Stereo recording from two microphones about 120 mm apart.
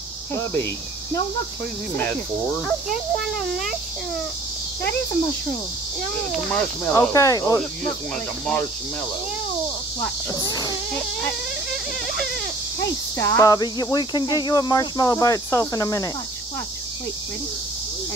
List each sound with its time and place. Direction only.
0.3 s speech: 20° left (ahead or behind)
2.0 s speech: 10° left (ahead or behind)
3.3 s speech: centre (ahead or behind)
6.3 s speech: 5° left (ahead or behind)
6.9 s a sound: 25° left (ahead or behind)
10.3 s cricket: 30° left (ahead or behind)
13.2 s a sound: 25° left (ahead or behind)
13.9 s cricket: 35° left (ahead or behind)